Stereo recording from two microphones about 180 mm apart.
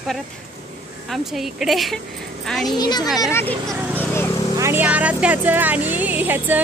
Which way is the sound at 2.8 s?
20° left (ahead or behind).